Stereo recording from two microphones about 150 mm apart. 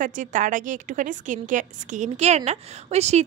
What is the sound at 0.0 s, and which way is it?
A woman's voice, 60° right (ahead or behind).